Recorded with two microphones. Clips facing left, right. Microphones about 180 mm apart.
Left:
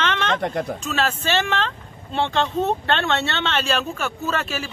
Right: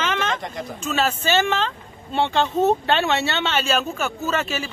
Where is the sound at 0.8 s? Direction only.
Centre (ahead or behind).